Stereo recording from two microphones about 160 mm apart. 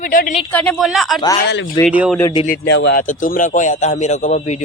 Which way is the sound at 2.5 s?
90° left.